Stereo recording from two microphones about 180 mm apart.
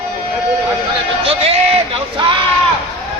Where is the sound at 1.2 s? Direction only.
35° right (ahead or behind).